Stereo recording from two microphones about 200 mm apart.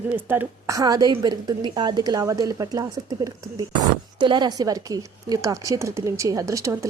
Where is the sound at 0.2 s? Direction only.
10° right (ahead or behind).